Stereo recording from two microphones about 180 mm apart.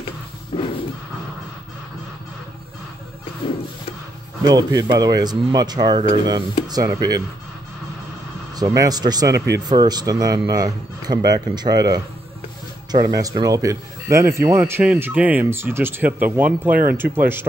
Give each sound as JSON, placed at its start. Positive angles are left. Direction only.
{"t": 0.5, "sound": "a sound", "side_deg": 30}
{"t": 4.4, "sound": "speech", "side_deg": -20}
{"t": 8.5, "sound": "speech", "side_deg": -20}